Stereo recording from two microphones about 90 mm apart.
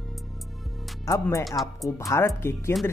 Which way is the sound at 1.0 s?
35° left (ahead or behind).